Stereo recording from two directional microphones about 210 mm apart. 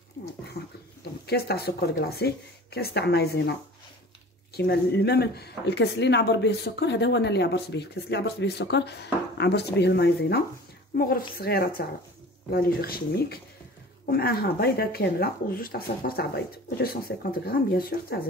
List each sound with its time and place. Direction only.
0.2 s dog: 45° left (ahead or behind)
1.2 s speech: 50° left (ahead or behind)
4.6 s speech: 50° left (ahead or behind)